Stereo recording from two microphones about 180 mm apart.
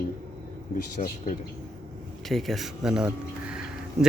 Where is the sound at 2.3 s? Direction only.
Centre (ahead or behind).